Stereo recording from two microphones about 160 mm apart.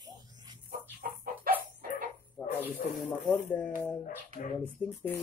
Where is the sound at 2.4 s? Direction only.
Centre (ahead or behind).